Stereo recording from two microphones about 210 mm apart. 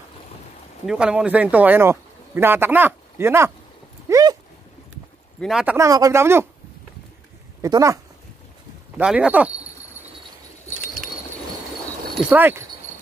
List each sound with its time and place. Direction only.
0.8 s speech: 5° right (ahead or behind)
4.1 s a sound: 20° right (ahead or behind)
5.4 s speech: 5° right (ahead or behind)
5.8 s speech: 15° right (ahead or behind)
7.6 s speech: 15° right (ahead or behind)
12.3 s speech: 10° right (ahead or behind)